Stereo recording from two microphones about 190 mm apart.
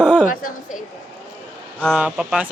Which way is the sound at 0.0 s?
5° right (ahead or behind).